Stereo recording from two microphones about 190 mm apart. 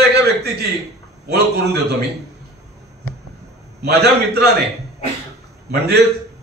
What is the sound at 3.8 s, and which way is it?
Speech, 60° right (ahead or behind).